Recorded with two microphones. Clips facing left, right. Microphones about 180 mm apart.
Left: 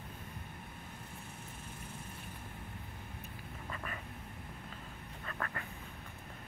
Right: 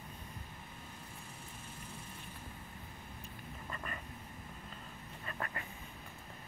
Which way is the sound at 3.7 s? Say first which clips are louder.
Left 1 dB; centre (ahead or behind).